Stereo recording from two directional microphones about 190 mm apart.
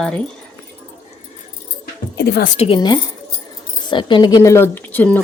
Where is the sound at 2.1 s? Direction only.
55° left (ahead or behind).